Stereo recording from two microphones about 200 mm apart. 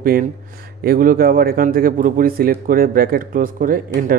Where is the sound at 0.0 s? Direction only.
45° right (ahead or behind).